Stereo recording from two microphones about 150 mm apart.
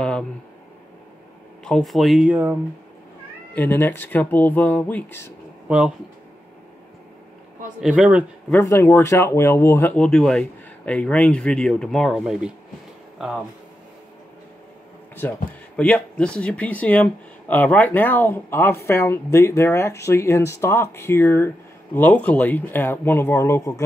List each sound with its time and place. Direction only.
1.6 s speech: 5° left (ahead or behind)
3.5 s speech: 15° left (ahead or behind)
5.7 s speech: 5° right (ahead or behind)
7.8 s speech: 5° right (ahead or behind)
8.5 s speech: 15° left (ahead or behind); by 12.5 s 5° right (ahead or behind)
15.1 s speech: 10° left (ahead or behind)